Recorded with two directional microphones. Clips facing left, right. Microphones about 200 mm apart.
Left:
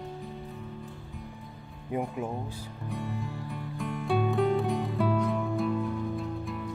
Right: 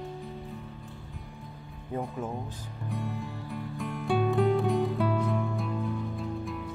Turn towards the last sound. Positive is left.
turn(degrees=0)  # may be behind; listen again after turning